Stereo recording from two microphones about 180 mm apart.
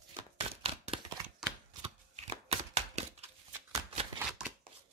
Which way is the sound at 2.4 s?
35° right (ahead or behind).